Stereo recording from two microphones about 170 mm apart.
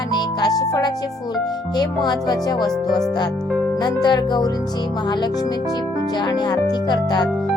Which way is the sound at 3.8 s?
25° left (ahead or behind).